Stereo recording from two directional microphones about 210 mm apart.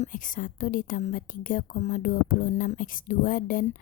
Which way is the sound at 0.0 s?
40° left (ahead or behind).